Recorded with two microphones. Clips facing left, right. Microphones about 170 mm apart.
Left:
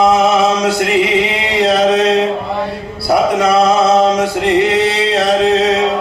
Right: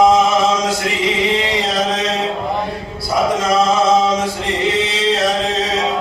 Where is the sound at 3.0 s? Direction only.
65° left (ahead or behind).